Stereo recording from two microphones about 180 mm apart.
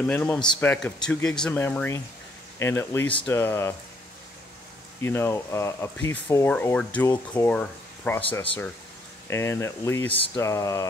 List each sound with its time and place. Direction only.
0.0 s speech: 5° left (ahead or behind)
5.0 s speech: 15° left (ahead or behind)